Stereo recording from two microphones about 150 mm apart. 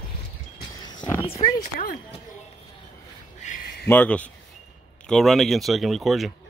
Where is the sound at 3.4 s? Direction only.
60° left (ahead or behind).